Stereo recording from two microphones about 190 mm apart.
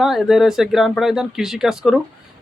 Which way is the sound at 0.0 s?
Centre (ahead or behind).